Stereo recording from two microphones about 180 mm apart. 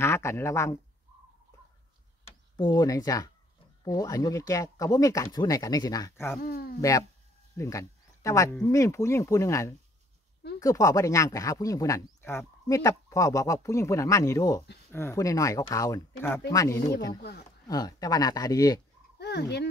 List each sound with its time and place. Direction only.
0.0 s speech: 15° left (ahead or behind)
2.2 s speech: 25° left (ahead or behind)
6.4 s speech: 60° left (ahead or behind)
6.8 s speech: 20° left (ahead or behind)
7.5 s a sound: 15° left (ahead or behind)
8.6 s speech: 15° left (ahead or behind)
19.1 s frog: 65° left (ahead or behind)